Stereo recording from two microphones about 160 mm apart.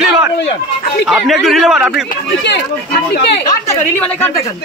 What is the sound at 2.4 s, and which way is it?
Speech, 90° left.